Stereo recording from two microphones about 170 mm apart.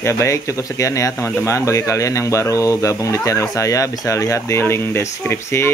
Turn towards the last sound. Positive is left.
turn(degrees=15)  # may be behind; listen again after turning